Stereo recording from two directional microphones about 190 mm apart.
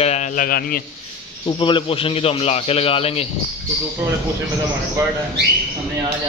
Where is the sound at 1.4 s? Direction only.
25° left (ahead or behind).